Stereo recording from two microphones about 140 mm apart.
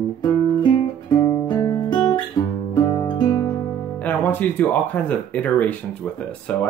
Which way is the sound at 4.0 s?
10° left (ahead or behind).